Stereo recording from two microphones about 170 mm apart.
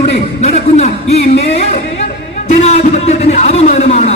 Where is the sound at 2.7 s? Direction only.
40° left (ahead or behind).